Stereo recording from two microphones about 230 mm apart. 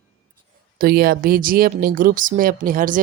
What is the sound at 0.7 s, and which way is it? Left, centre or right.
Speech, right.